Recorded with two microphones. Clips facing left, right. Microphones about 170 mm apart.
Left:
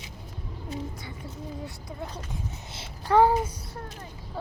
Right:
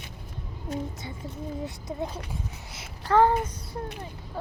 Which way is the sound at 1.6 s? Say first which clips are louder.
Right 5 dB; 20° right (ahead or behind).